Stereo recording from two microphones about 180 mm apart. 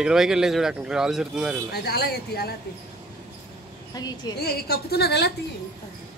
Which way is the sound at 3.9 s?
20° left (ahead or behind).